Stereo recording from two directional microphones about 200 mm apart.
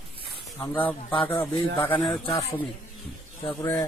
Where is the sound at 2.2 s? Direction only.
30° left (ahead or behind).